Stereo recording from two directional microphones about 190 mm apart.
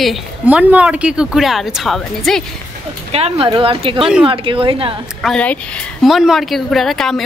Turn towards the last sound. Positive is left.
turn(degrees=0)  # may be behind; listen again after turning